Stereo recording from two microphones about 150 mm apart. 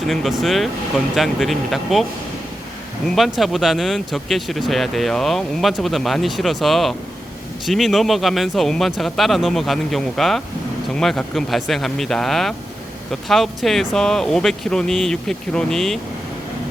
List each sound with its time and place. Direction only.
0.1 s speech: centre (ahead or behind)
3.2 s speech: centre (ahead or behind)